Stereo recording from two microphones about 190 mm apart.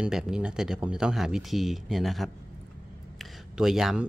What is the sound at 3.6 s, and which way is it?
Speech, centre (ahead or behind).